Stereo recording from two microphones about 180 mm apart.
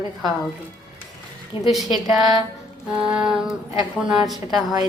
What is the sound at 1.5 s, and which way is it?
Speech, 30° left (ahead or behind).